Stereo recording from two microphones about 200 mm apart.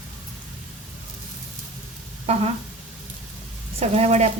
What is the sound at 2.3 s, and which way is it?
Speech, 30° right (ahead or behind).